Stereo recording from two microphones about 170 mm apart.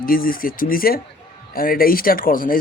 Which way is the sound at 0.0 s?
55° left (ahead or behind).